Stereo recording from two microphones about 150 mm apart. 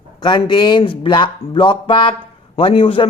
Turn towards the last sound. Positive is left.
turn(degrees=35)  # may be behind; listen again after turning